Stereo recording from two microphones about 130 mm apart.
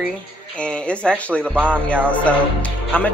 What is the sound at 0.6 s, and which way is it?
Speech, 10° left (ahead or behind).